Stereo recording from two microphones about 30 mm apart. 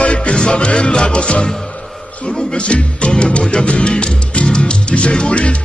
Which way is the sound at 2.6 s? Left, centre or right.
Left.